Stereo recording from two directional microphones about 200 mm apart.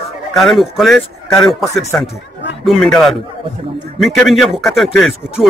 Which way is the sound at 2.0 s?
60° left (ahead or behind).